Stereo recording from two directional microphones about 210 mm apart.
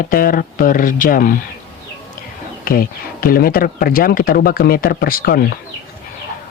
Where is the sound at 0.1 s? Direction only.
40° left (ahead or behind).